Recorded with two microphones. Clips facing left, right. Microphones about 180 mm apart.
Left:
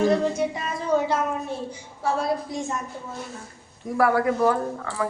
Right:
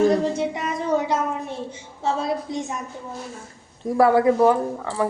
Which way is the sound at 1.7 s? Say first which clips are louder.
Right 2 dB; 25° right (ahead or behind).